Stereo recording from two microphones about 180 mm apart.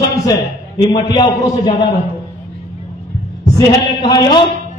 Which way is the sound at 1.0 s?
20° left (ahead or behind).